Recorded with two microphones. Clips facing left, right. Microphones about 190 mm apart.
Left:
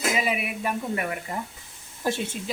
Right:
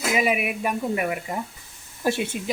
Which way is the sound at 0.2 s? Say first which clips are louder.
Right 4 dB; 15° right (ahead or behind).